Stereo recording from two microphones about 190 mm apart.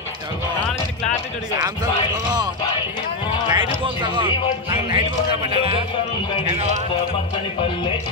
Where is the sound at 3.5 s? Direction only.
25° right (ahead or behind).